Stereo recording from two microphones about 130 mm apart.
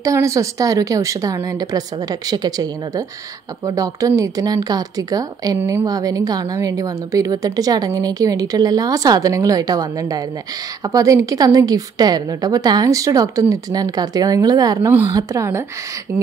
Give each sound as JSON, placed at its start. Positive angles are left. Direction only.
{"t": 0.0, "sound": "a woman's voice", "side_deg": -25}
{"t": 5.6, "sound": "speech", "side_deg": -15}
{"t": 5.9, "sound": "a woman's voice", "side_deg": -30}